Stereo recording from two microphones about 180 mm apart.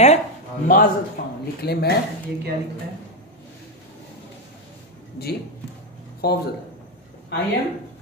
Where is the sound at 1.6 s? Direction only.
60° left (ahead or behind).